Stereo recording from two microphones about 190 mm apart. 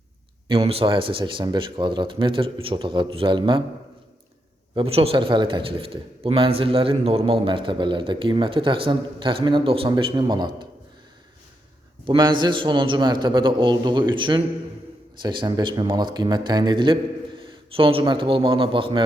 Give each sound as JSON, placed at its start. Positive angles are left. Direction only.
{"t": 0.4, "sound": "a man's voice", "side_deg": -30}
{"t": 4.7, "sound": "a man's voice", "side_deg": -30}
{"t": 12.0, "sound": "a man's voice", "side_deg": -25}